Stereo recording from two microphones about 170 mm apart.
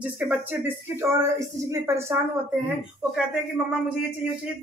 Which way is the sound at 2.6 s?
5° right (ahead or behind).